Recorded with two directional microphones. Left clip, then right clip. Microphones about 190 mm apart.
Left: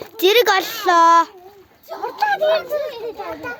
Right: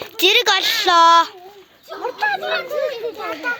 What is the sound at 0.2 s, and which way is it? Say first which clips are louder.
A woman's voice: even; 15° left (ahead or behind).